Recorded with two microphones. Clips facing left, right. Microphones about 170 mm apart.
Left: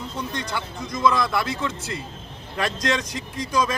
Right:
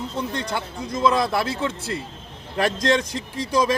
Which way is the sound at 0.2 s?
30° right (ahead or behind).